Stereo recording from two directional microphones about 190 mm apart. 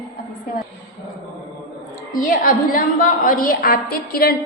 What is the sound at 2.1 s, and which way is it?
A woman's voice, 45° left (ahead or behind).